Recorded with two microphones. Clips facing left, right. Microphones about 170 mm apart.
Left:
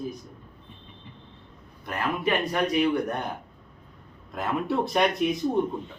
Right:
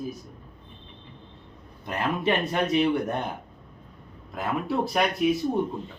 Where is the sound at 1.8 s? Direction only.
20° right (ahead or behind).